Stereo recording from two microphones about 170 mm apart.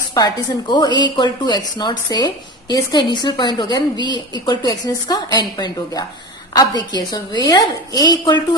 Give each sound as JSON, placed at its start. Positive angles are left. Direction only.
{"t": 0.1, "sound": "a woman's voice", "side_deg": 25}